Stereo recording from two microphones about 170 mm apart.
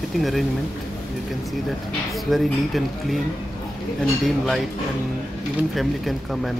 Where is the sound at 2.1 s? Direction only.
Centre (ahead or behind).